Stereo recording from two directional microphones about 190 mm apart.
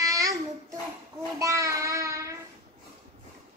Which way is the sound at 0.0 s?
20° right (ahead or behind).